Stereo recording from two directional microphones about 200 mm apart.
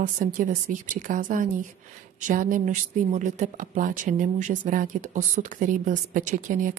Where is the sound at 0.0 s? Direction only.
45° right (ahead or behind).